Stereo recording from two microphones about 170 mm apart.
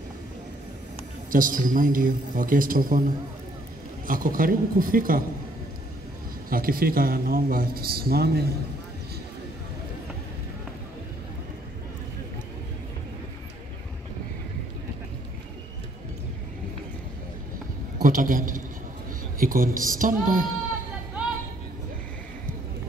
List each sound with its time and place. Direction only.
1.3 s a man's voice: 55° right (ahead or behind)
4.1 s a man's voice: 55° right (ahead or behind)
6.5 s a man's voice: 60° right (ahead or behind)
18.0 s a man's voice: 50° right (ahead or behind)